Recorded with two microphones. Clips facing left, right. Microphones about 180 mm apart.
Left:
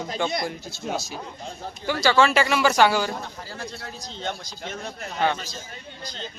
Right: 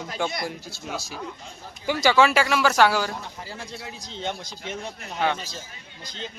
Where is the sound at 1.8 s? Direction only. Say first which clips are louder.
Right 1 dB; 10° right (ahead or behind).